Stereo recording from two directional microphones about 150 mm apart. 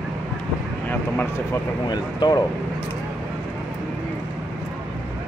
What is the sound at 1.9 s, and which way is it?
Speech, 30° left (ahead or behind).